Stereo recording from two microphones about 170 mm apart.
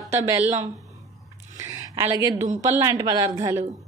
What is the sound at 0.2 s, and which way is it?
Speech, 15° right (ahead or behind).